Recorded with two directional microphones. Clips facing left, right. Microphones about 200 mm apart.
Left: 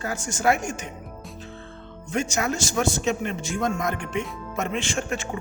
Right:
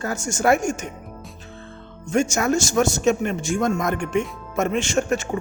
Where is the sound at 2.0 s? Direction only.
45° right (ahead or behind).